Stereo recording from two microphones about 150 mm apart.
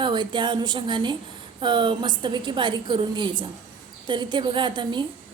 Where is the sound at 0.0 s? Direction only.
30° right (ahead or behind).